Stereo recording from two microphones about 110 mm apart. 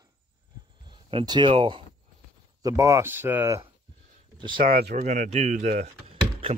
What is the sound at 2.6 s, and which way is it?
Speech, 30° right (ahead or behind).